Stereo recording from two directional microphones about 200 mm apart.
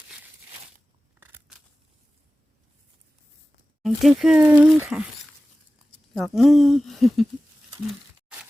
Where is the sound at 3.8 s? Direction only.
Centre (ahead or behind).